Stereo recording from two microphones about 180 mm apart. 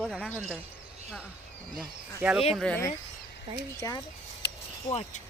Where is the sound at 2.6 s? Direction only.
5° left (ahead or behind).